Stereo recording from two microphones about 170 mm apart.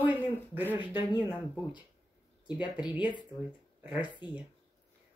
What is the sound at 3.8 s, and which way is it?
Speech, 10° right (ahead or behind).